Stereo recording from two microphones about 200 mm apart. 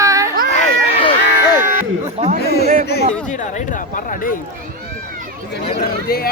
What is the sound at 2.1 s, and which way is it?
Chatter, 30° right (ahead or behind).